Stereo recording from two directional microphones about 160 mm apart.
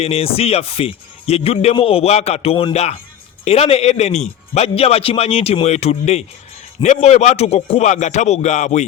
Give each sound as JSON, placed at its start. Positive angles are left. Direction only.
{"t": 0.0, "sound": "speech", "side_deg": 40}